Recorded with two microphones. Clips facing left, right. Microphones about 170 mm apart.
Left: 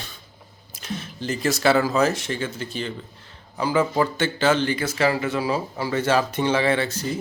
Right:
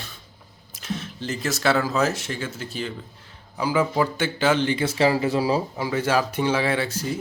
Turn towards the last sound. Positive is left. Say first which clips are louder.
# left 2 dB
turn(degrees=-10)  # may be behind; listen again after turning